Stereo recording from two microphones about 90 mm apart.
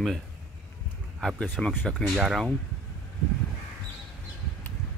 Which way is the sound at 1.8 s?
5° right (ahead or behind).